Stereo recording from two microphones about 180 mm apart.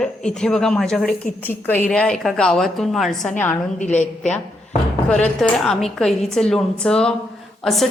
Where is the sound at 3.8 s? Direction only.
40° left (ahead or behind).